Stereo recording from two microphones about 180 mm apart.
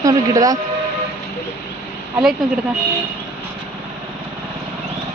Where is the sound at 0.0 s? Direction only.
20° right (ahead or behind).